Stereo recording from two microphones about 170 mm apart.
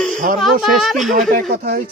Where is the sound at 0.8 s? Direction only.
Centre (ahead or behind).